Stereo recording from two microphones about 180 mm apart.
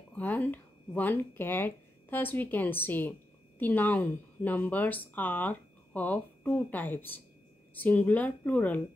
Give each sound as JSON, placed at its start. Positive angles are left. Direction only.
{"t": 0.1, "sound": "speech", "side_deg": 10}